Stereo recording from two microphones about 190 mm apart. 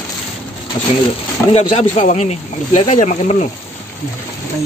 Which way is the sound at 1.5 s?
30° left (ahead or behind).